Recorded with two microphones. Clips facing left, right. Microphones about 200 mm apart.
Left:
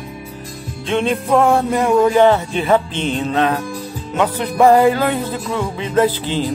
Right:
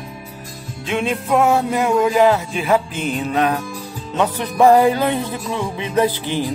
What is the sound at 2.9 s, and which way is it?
Music, 30° left (ahead or behind).